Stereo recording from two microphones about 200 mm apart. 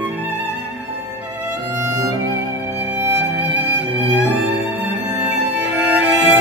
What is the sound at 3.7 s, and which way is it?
Music, 60° right (ahead or behind).